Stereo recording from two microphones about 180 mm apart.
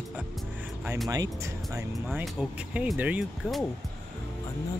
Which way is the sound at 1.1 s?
20° right (ahead or behind).